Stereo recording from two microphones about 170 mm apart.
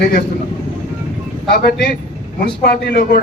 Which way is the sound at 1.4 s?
65° left (ahead or behind).